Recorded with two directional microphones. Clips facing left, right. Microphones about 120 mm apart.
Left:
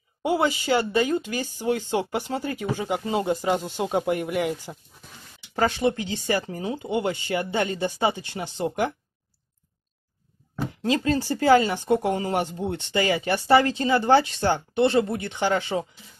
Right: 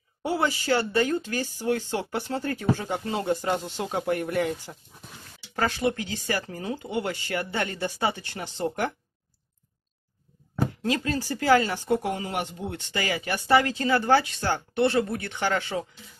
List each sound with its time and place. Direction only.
0.2 s speech: 15° left (ahead or behind)
5.6 s speech: 25° left (ahead or behind)
10.8 s speech: 25° left (ahead or behind)